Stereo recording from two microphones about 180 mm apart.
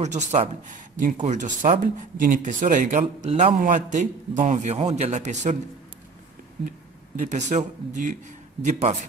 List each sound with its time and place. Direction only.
0.0 s speech: 40° right (ahead or behind)
7.2 s speech: 40° right (ahead or behind)